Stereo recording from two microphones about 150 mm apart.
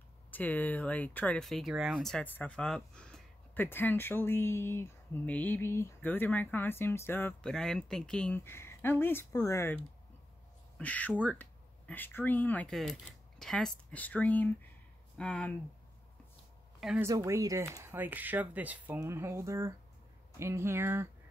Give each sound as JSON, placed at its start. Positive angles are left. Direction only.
{"t": 0.3, "sound": "speech", "side_deg": 10}
{"t": 7.5, "sound": "speech", "side_deg": 5}
{"t": 17.0, "sound": "speech", "side_deg": -20}